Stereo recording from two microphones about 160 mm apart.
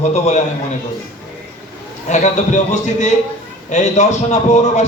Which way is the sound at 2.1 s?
50° left (ahead or behind).